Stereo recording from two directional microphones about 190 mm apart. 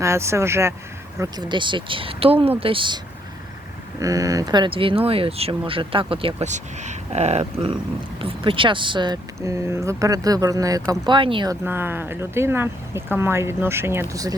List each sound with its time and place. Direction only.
0.0 s speech: 15° right (ahead or behind)
4.0 s speech: 20° right (ahead or behind)
11.6 s speech: 10° right (ahead or behind)